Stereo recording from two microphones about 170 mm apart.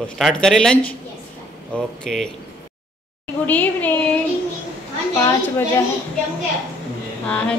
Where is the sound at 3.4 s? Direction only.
10° left (ahead or behind).